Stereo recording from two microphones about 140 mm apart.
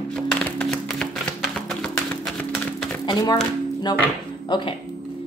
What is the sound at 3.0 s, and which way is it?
Speech, 30° left (ahead or behind).